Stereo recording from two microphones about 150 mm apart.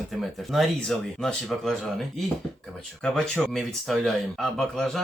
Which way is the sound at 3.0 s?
5° left (ahead or behind).